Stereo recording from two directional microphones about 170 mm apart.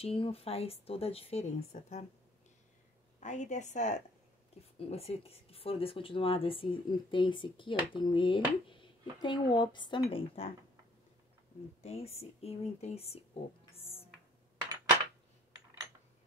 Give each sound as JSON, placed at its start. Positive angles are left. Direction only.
{"t": 0.0, "sound": "speech", "side_deg": 35}
{"t": 3.2, "sound": "a woman's voice", "side_deg": 45}
{"t": 11.8, "sound": "speech", "side_deg": 35}
{"t": 13.7, "sound": "a sound", "side_deg": 35}